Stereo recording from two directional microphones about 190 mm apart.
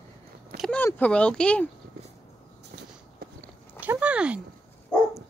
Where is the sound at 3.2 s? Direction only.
55° right (ahead or behind).